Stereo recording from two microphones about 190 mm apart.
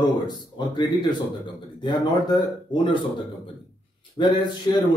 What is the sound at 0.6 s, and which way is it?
Speech, 25° left (ahead or behind).